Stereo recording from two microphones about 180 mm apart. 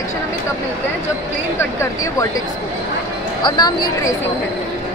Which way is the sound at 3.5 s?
25° left (ahead or behind).